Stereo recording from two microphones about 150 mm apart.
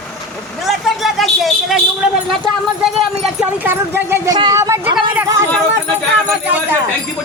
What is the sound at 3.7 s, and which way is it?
Speech, 15° right (ahead or behind).